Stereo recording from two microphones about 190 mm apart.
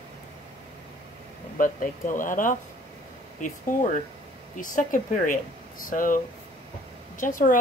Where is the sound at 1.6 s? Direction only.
45° left (ahead or behind).